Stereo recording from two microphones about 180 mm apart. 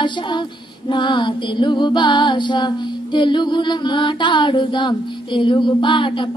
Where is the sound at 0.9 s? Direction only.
25° left (ahead or behind).